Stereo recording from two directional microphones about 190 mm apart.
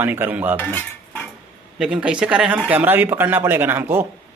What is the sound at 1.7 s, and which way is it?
Speech, 5° right (ahead or behind).